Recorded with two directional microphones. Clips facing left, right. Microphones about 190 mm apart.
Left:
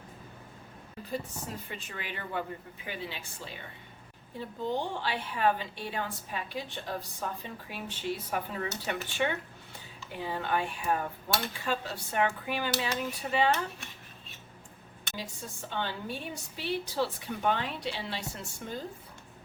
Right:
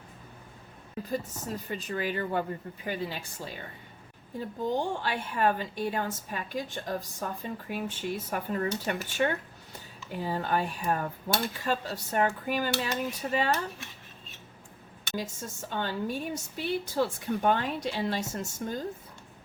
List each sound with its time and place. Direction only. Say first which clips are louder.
1.1 s a woman's voice: right 3 dB; 40° right (ahead or behind)
15.1 s a woman's voice: right 6 dB; 45° right (ahead or behind)